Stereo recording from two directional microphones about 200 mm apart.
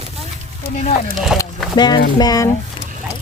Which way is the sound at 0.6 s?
35° left (ahead or behind).